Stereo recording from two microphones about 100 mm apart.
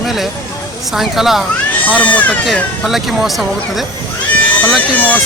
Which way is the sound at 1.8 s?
15° left (ahead or behind).